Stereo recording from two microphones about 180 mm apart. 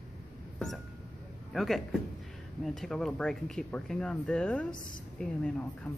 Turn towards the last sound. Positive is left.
turn(degrees=10)  # may be behind; listen again after turning